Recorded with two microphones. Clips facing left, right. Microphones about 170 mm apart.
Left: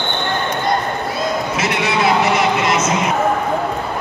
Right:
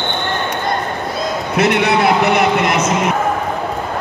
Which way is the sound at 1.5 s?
60° right (ahead or behind).